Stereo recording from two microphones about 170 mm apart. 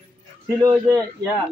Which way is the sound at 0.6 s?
20° right (ahead or behind).